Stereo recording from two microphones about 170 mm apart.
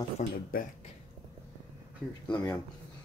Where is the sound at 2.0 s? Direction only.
5° left (ahead or behind).